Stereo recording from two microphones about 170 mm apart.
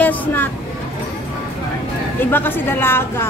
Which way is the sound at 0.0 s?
10° left (ahead or behind).